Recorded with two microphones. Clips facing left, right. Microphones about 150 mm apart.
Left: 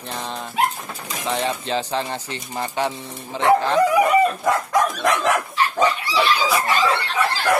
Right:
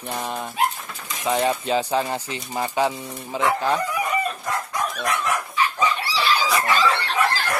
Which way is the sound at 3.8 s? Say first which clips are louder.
Left 9 dB; 90° left.